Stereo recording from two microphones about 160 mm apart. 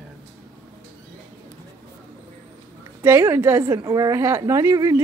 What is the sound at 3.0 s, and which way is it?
A woman's voice, 15° right (ahead or behind).